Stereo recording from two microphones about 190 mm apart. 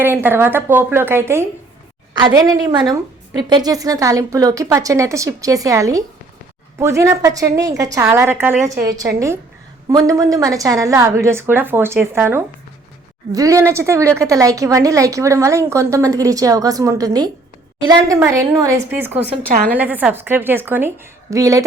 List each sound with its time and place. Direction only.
0.0 s a woman's voice: 10° right (ahead or behind)